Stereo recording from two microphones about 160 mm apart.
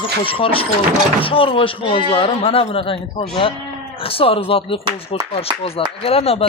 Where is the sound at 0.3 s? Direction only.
35° left (ahead or behind).